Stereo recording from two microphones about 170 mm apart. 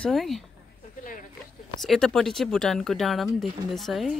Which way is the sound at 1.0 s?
50° left (ahead or behind).